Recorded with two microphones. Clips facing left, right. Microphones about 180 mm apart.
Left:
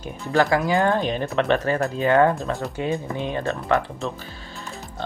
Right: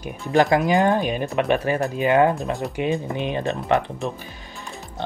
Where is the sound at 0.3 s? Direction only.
20° right (ahead or behind).